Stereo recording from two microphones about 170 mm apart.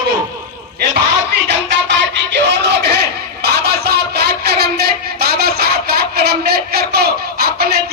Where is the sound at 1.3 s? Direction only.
85° right.